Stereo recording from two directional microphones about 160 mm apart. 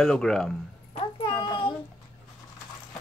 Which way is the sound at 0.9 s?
30° left (ahead or behind).